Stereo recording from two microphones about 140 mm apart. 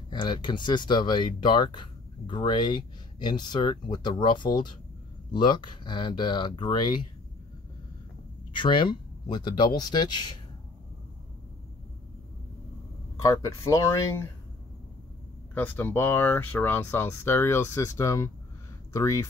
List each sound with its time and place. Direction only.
0.1 s speech: 35° left (ahead or behind)
8.5 s speech: 35° left (ahead or behind)
13.2 s speech: 25° left (ahead or behind)
15.5 s speech: 15° left (ahead or behind)